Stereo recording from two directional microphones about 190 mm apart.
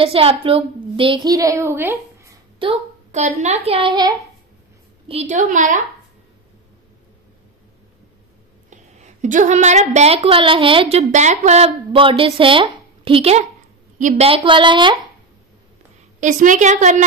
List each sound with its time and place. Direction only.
0.0 s a woman's voice: 30° right (ahead or behind); by 2.3 s 15° right (ahead or behind)
2.6 s a woman's voice: 35° right (ahead or behind)
5.0 s a woman's voice: 35° right (ahead or behind)
8.6 s a woman's voice: 40° right (ahead or behind)
16.2 s a woman's voice: 40° right (ahead or behind)